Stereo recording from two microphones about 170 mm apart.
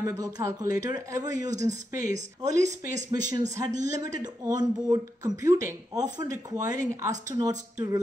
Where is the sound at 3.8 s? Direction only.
20° right (ahead or behind).